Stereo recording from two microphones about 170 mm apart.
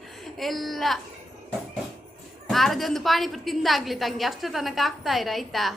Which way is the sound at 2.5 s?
Centre (ahead or behind).